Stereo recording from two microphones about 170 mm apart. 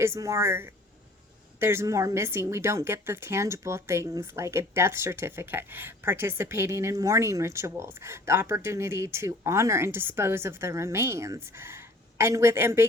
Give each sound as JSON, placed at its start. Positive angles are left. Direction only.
{"t": 0.0, "sound": "a woman's voice", "side_deg": -15}